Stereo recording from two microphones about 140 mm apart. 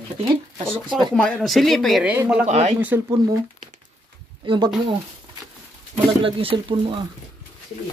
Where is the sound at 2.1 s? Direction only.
10° right (ahead or behind).